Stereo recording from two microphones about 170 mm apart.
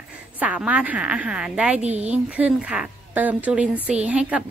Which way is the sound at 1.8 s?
40° right (ahead or behind).